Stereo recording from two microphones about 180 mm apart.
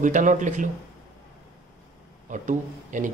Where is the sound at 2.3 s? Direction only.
45° right (ahead or behind).